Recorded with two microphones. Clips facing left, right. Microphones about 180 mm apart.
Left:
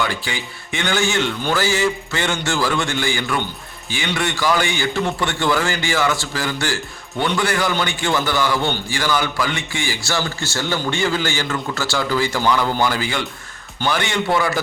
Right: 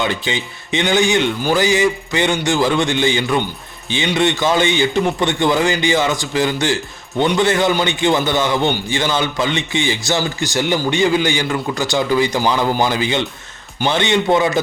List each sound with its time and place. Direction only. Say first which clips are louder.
0.0 s a man's voice: right 3 dB; 20° right (ahead or behind)